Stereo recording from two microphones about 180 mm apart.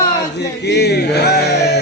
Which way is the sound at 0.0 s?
65° left (ahead or behind).